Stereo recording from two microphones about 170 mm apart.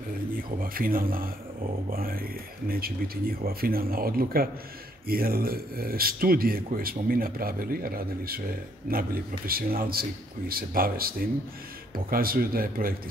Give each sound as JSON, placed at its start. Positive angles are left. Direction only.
{"t": 0.6, "sound": "speech", "side_deg": -55}